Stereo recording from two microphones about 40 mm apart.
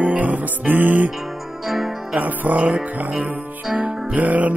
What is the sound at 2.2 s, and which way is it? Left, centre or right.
Music, right.